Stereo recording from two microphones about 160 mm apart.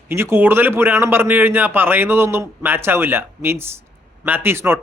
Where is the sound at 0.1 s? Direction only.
15° right (ahead or behind).